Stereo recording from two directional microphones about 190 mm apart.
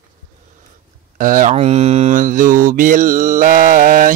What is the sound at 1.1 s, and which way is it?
Mantra, 45° right (ahead or behind).